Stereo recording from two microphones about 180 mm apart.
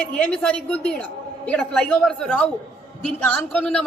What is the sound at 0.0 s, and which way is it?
A woman's voice, 5° left (ahead or behind).